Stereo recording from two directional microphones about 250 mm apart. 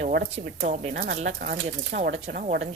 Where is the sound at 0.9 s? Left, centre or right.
Right.